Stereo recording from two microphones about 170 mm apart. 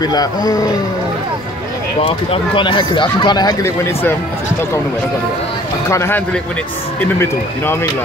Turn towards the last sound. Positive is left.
turn(degrees=15)  # may be behind; listen again after turning